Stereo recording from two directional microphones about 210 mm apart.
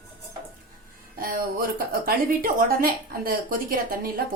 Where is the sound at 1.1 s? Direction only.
45° right (ahead or behind).